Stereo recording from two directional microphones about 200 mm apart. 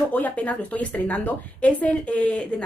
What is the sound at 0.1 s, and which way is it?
A woman's voice, 5° left (ahead or behind).